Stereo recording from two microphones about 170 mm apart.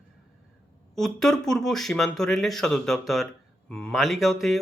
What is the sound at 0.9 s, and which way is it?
Speech, centre (ahead or behind).